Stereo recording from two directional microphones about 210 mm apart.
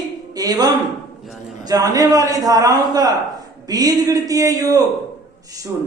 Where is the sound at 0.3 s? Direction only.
20° right (ahead or behind).